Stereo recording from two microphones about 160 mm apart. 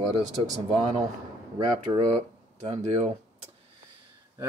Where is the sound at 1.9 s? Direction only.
20° right (ahead or behind).